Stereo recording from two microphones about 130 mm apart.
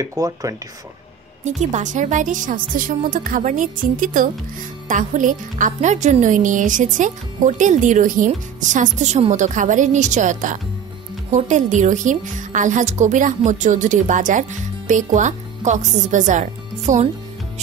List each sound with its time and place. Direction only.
0.0 s speech: 25° right (ahead or behind)
1.4 s a woman's voice: 65° right (ahead or behind); by 4.3 s 90° right
4.8 s a woman's voice: 80° right